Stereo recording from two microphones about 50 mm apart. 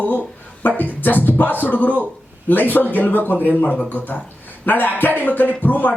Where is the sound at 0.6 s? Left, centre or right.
Left.